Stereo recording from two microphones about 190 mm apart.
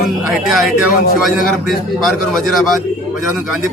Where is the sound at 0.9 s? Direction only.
50° left (ahead or behind).